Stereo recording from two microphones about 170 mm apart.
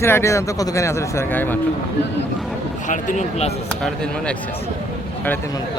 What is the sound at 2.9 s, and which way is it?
Speech, 45° left (ahead or behind).